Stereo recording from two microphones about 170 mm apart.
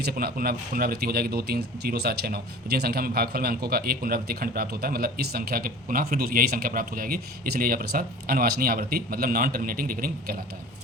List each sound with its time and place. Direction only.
0.0 s speech: 65° right (ahead or behind)